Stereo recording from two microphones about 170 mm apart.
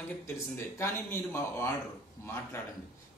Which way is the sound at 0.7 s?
15° left (ahead or behind).